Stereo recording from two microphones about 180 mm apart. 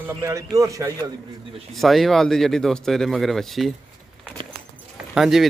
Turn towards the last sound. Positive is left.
turn(degrees=0)  # may be behind; listen again after turning